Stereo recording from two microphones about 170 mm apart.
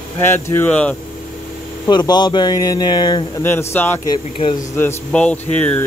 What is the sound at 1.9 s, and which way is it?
Speech, 25° left (ahead or behind).